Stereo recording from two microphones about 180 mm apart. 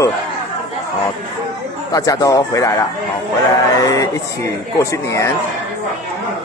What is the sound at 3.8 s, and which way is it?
A man's voice, 20° left (ahead or behind).